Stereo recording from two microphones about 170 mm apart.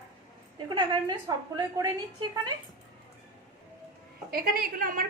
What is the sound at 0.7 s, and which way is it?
Speech, 25° right (ahead or behind).